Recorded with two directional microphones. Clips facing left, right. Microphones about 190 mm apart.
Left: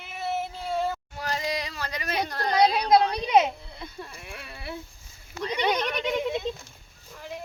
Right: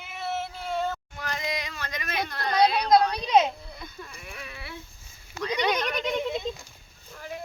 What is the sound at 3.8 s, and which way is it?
Speech, 30° left (ahead or behind).